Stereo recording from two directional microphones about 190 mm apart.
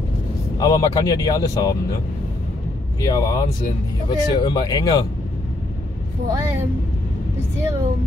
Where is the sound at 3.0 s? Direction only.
20° left (ahead or behind).